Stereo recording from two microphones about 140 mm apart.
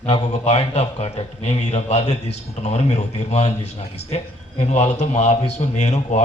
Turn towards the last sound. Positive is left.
turn(degrees=55)  # may be behind; listen again after turning